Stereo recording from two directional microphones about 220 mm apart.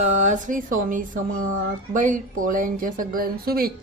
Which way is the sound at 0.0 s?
30° right (ahead or behind).